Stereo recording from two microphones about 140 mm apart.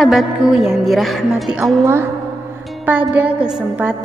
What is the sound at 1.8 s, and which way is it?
Speech, 15° right (ahead or behind).